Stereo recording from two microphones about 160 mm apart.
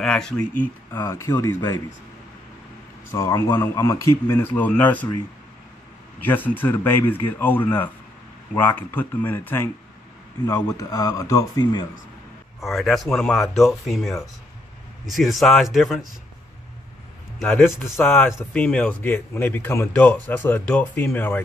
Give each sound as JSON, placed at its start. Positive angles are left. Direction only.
{"t": 0.0, "sound": "speech", "side_deg": 5}
{"t": 0.9, "sound": "speech", "side_deg": 20}
{"t": 3.1, "sound": "speech", "side_deg": 15}
{"t": 6.2, "sound": "speech", "side_deg": 10}
{"t": 12.5, "sound": "speech", "side_deg": 0}
{"t": 17.4, "sound": "speech", "side_deg": 5}
{"t": 18.0, "sound": "speech", "side_deg": 10}